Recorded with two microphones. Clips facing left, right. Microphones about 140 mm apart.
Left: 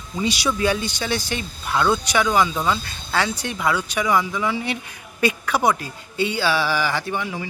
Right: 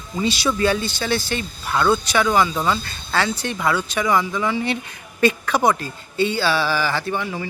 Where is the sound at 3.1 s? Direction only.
15° left (ahead or behind).